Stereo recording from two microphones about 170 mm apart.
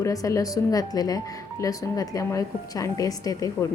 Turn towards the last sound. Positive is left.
turn(degrees=20)  # may be behind; listen again after turning